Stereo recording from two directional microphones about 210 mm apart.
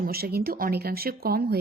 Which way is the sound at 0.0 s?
45° right (ahead or behind).